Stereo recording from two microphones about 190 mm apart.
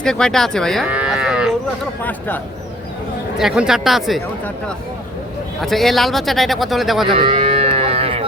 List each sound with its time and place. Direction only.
0.0 s moo: 5° left (ahead or behind)
2.0 s speech: 10° left (ahead or behind)
3.3 s speech: 5° right (ahead or behind)
5.6 s speech: centre (ahead or behind)
7.2 s moo: 30° right (ahead or behind)